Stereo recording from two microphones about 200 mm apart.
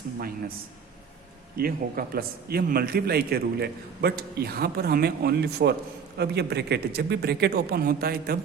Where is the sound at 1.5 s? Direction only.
50° right (ahead or behind).